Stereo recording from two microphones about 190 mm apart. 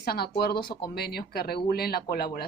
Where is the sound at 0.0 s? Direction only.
55° left (ahead or behind).